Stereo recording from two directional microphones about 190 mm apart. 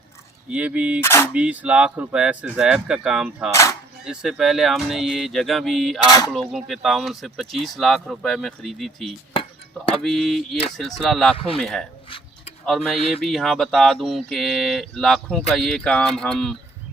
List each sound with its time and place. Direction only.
0.5 s cap gun: 5° right (ahead or behind)
1.0 s cap gun: 15° left (ahead or behind)
1.3 s speech: 5° right (ahead or behind)
3.5 s speech: 15° left (ahead or behind)
4.0 s speech: 5° right (ahead or behind)
6.1 s speech: 20° left (ahead or behind)
6.3 s speech: centre (ahead or behind)
9.3 s a sound: 30° left (ahead or behind)
10.0 s speech: centre (ahead or behind)